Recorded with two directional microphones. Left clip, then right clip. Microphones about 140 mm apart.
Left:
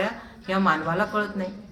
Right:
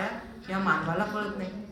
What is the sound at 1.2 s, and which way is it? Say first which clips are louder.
Speech: left 6 dB; 40° right (ahead or behind).